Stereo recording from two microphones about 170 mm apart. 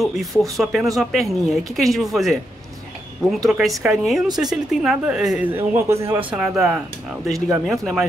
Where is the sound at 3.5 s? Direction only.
Centre (ahead or behind).